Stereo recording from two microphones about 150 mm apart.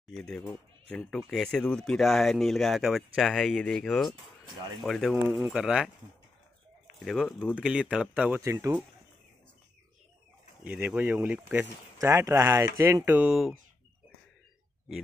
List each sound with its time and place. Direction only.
0.1 s speech: 5° left (ahead or behind)
5.1 s speech: 15° right (ahead or behind)
5.5 s speech: 5° right (ahead or behind)
7.1 s speech: centre (ahead or behind); by 8.8 s 20° right (ahead or behind)
10.6 s speech: 10° right (ahead or behind)